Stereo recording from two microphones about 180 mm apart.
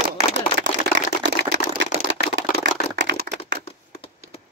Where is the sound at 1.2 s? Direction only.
75° right (ahead or behind).